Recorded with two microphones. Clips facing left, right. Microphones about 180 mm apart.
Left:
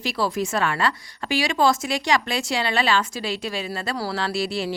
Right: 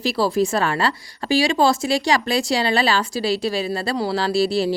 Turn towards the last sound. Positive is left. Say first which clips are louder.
# right 6 dB
turn(degrees=-35)  # may be behind; listen again after turning